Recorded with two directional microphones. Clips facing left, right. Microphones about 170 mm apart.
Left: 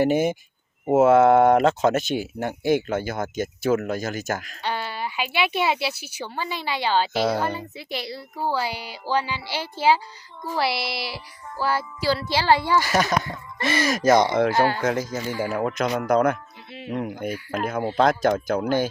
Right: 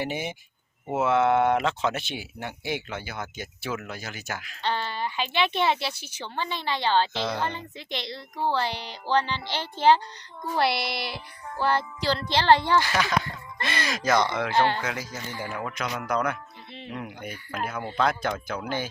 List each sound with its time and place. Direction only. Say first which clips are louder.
0.0 s speech: left 11 dB; 45° left (ahead or behind)
4.6 s music: right 4 dB; 10° left (ahead or behind)
7.1 s speech: left 7 dB; 40° left (ahead or behind)
7.3 s music: left 4 dB; 10° left (ahead or behind)
10.6 s speech: even; 5° left (ahead or behind)
11.6 s music: left 1 dB; 5° left (ahead or behind)
12.8 s speech: left 4 dB; 45° left (ahead or behind)